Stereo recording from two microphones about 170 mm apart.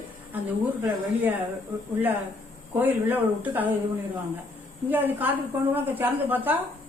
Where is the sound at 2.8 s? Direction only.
10° right (ahead or behind).